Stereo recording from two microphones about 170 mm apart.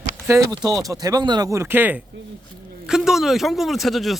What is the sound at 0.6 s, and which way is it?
Speech, 20° right (ahead or behind).